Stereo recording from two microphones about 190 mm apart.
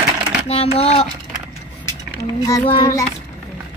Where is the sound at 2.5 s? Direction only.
20° left (ahead or behind).